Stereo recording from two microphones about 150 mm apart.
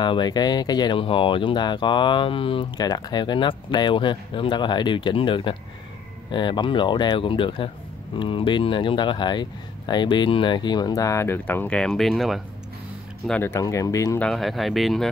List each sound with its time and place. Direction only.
0.0 s speech: 30° left (ahead or behind); by 12.4 s centre (ahead or behind)
13.3 s speech: 15° left (ahead or behind)
14.2 s speech: centre (ahead or behind)